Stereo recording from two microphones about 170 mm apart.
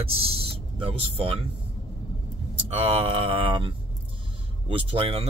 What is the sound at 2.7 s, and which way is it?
Speech, 35° right (ahead or behind).